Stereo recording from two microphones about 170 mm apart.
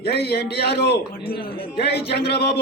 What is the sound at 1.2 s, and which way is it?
Speech, 60° left (ahead or behind).